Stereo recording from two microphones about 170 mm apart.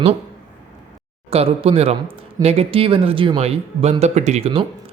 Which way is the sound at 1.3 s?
35° right (ahead or behind).